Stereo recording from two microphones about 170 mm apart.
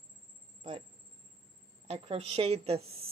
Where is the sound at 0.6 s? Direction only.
35° right (ahead or behind).